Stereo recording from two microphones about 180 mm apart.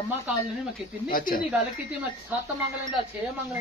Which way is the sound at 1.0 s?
50° left (ahead or behind).